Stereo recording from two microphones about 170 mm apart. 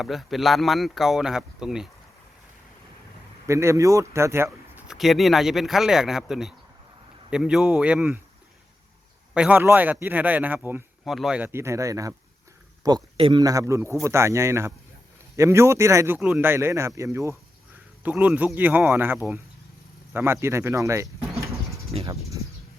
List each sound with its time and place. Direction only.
0.0 s speech: centre (ahead or behind)
3.4 s speech: 15° right (ahead or behind)
9.3 s speech: 5° right (ahead or behind)
21.5 s pigeon: centre (ahead or behind)